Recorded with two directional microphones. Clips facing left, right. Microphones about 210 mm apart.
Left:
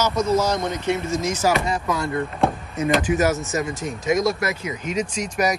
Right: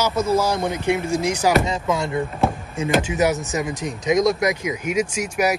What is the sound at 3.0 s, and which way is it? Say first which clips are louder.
A man's voice: even; 20° right (ahead or behind).